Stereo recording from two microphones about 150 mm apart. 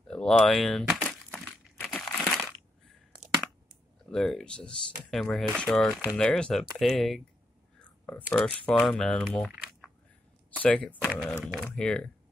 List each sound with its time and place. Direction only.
0.1 s speech: 5° left (ahead or behind)
1.3 s crumpling: centre (ahead or behind)
2.1 s crushing: centre (ahead or behind)
4.1 s speech: centre (ahead or behind)
7.8 s a sound: 10° left (ahead or behind)
8.5 s speech: 10° left (ahead or behind)
10.6 s speech: 10° left (ahead or behind)
11.0 s speech: centre (ahead or behind)